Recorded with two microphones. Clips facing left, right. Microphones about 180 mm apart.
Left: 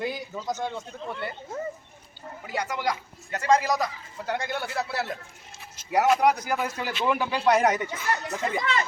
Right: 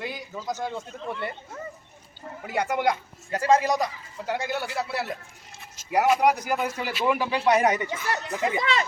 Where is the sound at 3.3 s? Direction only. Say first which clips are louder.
Right 2 dB; 25° right (ahead or behind).